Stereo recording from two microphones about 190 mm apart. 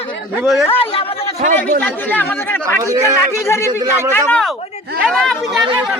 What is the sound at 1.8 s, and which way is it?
Speech, 10° left (ahead or behind).